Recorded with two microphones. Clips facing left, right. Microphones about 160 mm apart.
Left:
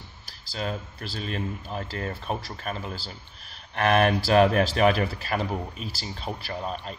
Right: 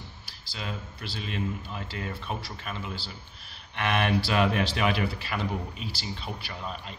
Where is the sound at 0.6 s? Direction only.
40° left (ahead or behind).